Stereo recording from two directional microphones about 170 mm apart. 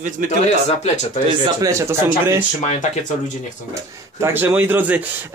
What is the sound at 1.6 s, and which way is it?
Speech, 15° right (ahead or behind).